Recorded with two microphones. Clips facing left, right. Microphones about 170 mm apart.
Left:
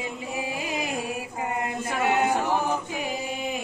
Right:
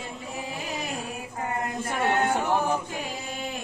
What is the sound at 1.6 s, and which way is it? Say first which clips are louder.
Chant: even; 5° left (ahead or behind).